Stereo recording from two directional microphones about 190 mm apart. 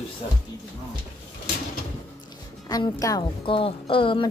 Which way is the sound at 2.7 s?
20° left (ahead or behind).